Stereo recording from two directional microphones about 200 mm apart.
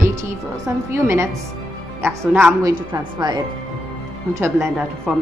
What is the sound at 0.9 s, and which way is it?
A woman's voice, 15° right (ahead or behind).